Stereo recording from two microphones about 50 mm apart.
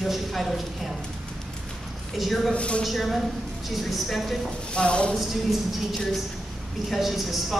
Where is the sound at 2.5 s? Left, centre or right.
Left.